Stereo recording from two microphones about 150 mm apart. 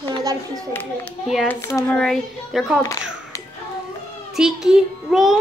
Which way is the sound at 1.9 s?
Centre (ahead or behind).